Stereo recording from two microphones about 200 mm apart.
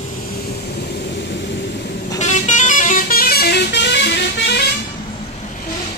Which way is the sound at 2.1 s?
35° left (ahead or behind).